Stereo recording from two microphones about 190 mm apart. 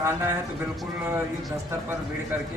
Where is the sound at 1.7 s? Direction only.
15° right (ahead or behind).